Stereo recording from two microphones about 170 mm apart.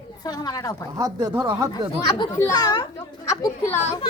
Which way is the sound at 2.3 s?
20° left (ahead or behind).